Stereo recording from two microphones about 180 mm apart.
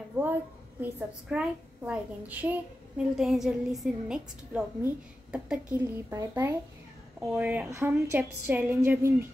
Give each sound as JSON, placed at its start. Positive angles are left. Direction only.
{"t": 0.2, "sound": "a woman's voice", "side_deg": -10}